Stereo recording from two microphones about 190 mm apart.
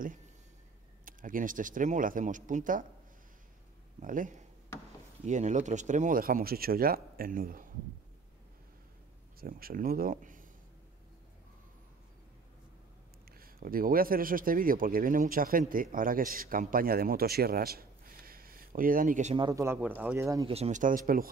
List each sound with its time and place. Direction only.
1.0 s speech: 45° right (ahead or behind)
4.0 s speech: 45° right (ahead or behind)
9.4 s speech: 50° right (ahead or behind)
13.3 s speech: 50° right (ahead or behind)
19.3 s speech: 20° right (ahead or behind)
20.4 s speech: 35° right (ahead or behind)